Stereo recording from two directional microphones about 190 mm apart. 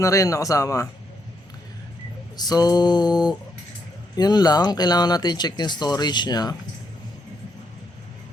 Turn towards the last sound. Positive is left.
turn(degrees=20)  # may be behind; listen again after turning